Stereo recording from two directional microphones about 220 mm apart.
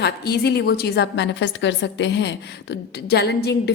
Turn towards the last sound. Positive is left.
turn(degrees=50)  # may be behind; listen again after turning